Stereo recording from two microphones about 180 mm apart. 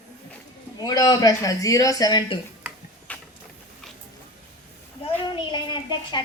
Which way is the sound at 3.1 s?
10° left (ahead or behind).